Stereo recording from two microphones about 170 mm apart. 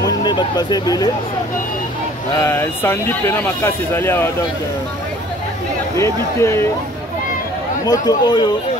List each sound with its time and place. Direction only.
0.0 s speech: 25° left (ahead or behind)
2.4 s speech: 15° left (ahead or behind)
5.9 s speech: 15° left (ahead or behind)
7.8 s speech: 20° left (ahead or behind)